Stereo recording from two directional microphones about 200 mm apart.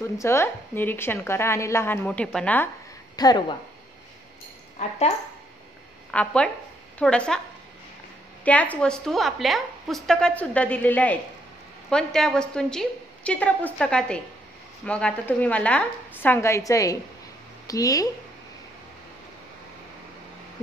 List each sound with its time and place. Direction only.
0.0 s a woman's voice: 15° left (ahead or behind)
3.2 s speech: 20° left (ahead or behind)
4.7 s speech: 35° left (ahead or behind)
6.1 s a woman's voice: 5° left (ahead or behind)
8.5 s a woman's voice: 5° left (ahead or behind)